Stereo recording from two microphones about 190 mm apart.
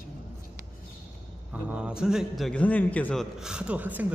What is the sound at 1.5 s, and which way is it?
A man's voice, 5° right (ahead or behind).